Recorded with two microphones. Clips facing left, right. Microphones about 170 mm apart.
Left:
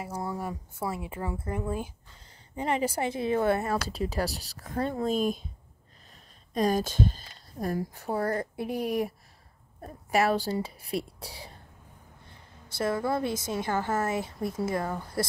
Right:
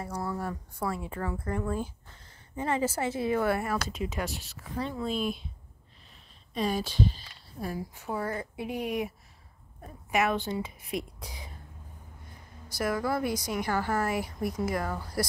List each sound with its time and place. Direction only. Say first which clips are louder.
0.9 s a woman's voice: even; 15° left (ahead or behind); by 4.7 s 40° left (ahead or behind)
4.7 s speech: left 4 dB; 50° left (ahead or behind)
6.5 s speech: left 4 dB; 45° left (ahead or behind)
12.6 s a woman's voice: left 1 dB; 25° left (ahead or behind)